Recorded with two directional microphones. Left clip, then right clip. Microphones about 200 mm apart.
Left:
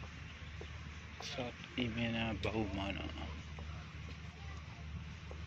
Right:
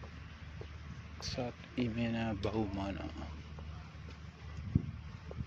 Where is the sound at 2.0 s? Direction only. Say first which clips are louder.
Right 1 dB; 30° right (ahead or behind).